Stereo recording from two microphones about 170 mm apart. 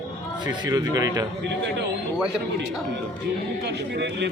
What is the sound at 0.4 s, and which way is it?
Speech, 25° right (ahead or behind).